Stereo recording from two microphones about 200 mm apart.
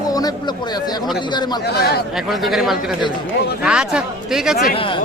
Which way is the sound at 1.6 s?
55° left (ahead or behind).